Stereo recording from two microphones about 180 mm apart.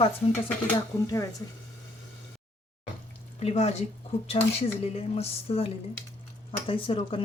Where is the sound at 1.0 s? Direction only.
20° left (ahead or behind).